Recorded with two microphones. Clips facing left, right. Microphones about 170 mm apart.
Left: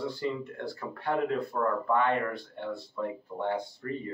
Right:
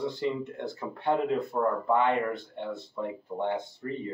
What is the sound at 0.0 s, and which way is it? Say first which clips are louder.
Speech: right 2 dB; 20° right (ahead or behind).